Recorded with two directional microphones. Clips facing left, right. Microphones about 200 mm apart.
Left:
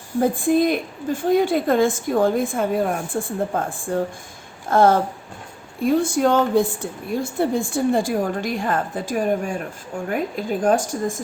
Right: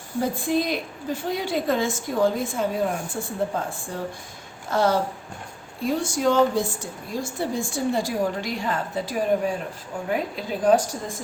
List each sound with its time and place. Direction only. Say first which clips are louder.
0.2 s a woman's voice: left 6 dB; 50° left (ahead or behind)